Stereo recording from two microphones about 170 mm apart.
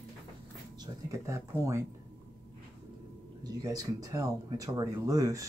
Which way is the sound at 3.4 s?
20° right (ahead or behind).